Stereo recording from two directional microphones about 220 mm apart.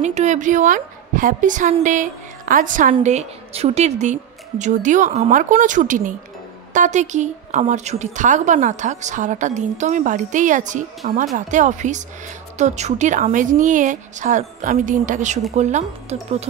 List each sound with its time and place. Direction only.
0.0 s a woman's voice: 30° right (ahead or behind)